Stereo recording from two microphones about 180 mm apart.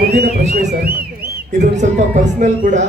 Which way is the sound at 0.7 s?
60° right (ahead or behind).